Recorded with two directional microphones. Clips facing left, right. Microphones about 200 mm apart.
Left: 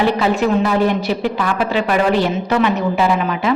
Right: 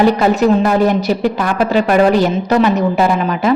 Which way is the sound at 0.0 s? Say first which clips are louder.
Right 4 dB; 40° right (ahead or behind).